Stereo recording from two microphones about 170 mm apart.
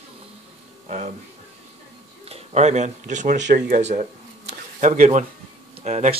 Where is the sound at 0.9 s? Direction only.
45° right (ahead or behind).